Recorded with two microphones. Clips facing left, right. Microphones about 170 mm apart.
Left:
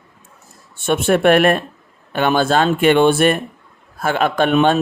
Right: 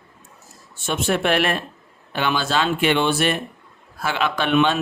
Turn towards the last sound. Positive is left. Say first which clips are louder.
# left 5 dB
turn(degrees=45)  # may be behind; listen again after turning